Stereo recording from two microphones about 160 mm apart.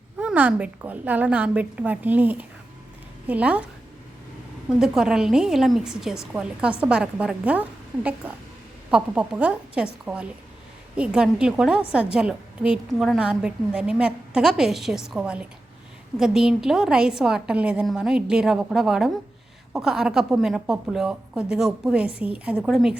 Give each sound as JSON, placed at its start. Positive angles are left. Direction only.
{"t": 0.2, "sound": "a woman's voice", "side_deg": -10}
{"t": 4.8, "sound": "a woman's voice", "side_deg": -5}